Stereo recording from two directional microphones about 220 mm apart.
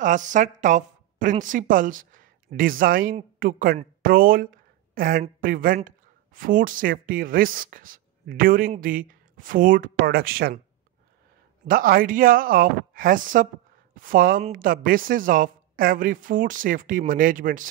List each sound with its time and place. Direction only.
0.0 s a woman's voice: 35° right (ahead or behind)
11.6 s speech: 40° right (ahead or behind)